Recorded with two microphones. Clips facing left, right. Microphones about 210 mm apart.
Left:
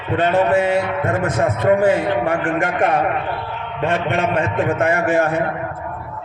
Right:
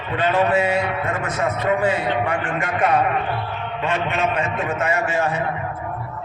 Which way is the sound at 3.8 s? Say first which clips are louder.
Left 3 dB; 55° left (ahead or behind).